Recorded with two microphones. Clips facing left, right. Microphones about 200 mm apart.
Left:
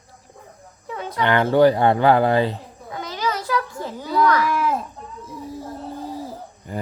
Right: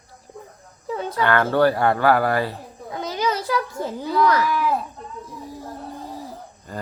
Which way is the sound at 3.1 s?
15° right (ahead or behind).